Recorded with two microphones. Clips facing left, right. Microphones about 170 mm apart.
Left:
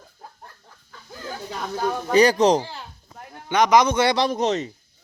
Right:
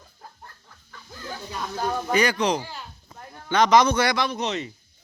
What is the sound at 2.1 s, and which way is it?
Speech, 35° left (ahead or behind).